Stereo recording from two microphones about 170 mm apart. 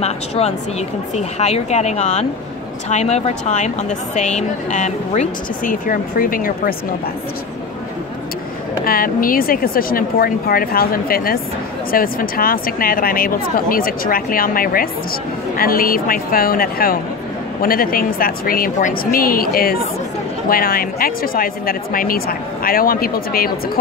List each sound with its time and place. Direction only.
0.0 s a woman's voice: 40° left (ahead or behind); by 6.7 s 55° left (ahead or behind)
8.8 s speech: 55° left (ahead or behind)